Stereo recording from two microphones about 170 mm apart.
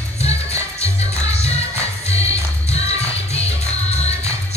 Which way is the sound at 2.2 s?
40° left (ahead or behind).